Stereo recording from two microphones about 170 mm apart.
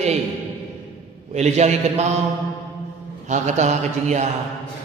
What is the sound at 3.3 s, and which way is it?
A man's voice, 45° right (ahead or behind).